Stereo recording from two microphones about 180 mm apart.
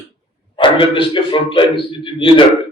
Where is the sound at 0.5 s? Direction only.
30° left (ahead or behind).